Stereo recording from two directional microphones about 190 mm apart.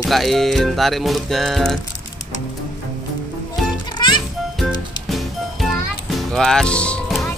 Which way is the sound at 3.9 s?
25° left (ahead or behind).